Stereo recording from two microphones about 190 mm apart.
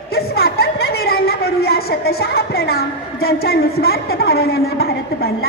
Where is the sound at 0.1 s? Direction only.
55° left (ahead or behind).